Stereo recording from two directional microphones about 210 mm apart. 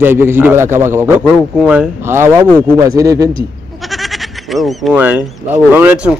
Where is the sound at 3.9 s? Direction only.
Centre (ahead or behind).